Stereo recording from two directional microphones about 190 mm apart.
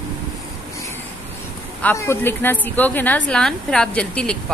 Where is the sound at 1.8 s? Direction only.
15° left (ahead or behind).